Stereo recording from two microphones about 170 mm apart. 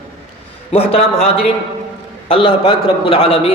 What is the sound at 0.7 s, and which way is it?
Speech, 35° left (ahead or behind).